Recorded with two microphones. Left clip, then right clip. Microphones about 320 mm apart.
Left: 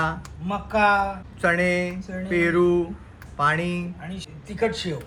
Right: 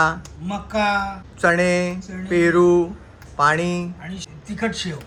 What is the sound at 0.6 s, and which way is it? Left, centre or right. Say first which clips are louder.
Speech: left 1 dB; centre.